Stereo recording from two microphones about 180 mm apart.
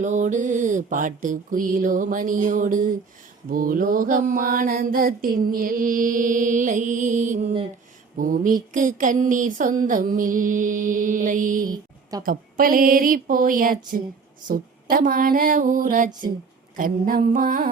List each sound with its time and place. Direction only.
0.0 s mantra: 45° right (ahead or behind)